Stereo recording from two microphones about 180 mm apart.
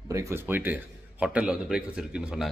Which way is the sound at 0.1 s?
15° right (ahead or behind).